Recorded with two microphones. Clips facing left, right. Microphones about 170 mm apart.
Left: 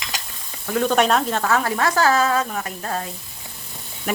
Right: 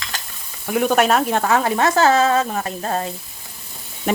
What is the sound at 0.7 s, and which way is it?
Speech, 10° right (ahead or behind).